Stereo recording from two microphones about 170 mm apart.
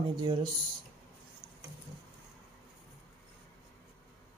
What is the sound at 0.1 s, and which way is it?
Speech, 25° right (ahead or behind).